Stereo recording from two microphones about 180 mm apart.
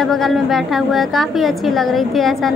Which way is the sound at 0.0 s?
Centre (ahead or behind).